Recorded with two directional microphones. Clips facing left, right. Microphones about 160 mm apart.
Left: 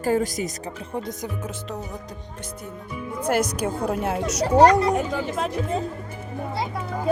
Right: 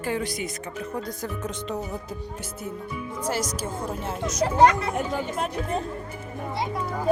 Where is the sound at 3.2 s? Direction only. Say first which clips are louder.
Left 6 dB; 60° left (ahead or behind).